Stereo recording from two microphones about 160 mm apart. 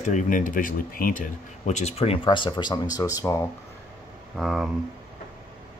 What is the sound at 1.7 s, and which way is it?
Speech, 45° left (ahead or behind).